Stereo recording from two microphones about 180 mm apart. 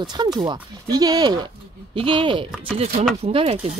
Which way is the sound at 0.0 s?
25° right (ahead or behind).